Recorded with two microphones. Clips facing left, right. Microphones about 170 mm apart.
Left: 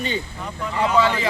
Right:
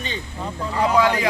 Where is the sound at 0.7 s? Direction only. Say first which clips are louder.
Right 1 dB; 10° right (ahead or behind).